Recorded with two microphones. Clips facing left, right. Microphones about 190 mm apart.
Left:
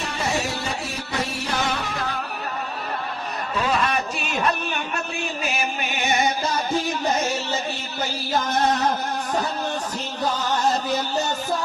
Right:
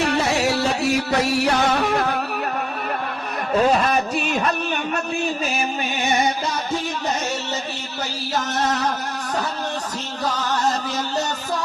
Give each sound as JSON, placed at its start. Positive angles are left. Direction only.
{"t": 0.0, "sound": "music", "side_deg": -75}
{"t": 3.6, "sound": "speech", "side_deg": -40}